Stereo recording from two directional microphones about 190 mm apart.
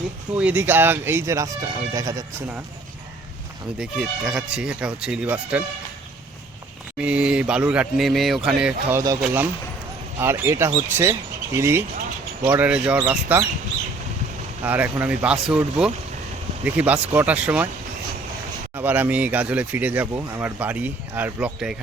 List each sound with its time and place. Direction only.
0.3 s speech: 10° right (ahead or behind)
3.8 s speech: 5° right (ahead or behind)
7.0 s speech: 5° right (ahead or behind)
10.2 s speech: 10° right (ahead or behind)
14.6 s speech: 10° right (ahead or behind)
18.8 s speech: 10° right (ahead or behind)